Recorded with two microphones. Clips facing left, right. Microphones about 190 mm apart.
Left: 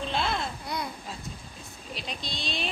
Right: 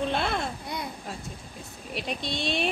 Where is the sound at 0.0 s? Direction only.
55° right (ahead or behind).